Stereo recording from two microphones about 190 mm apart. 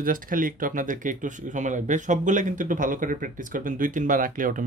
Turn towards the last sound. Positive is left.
turn(degrees=-45)  # may be behind; listen again after turning